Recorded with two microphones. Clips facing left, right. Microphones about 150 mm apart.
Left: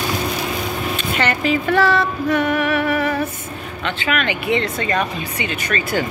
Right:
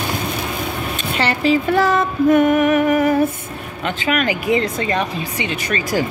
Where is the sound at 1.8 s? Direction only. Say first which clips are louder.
Right 2 dB; 45° right (ahead or behind).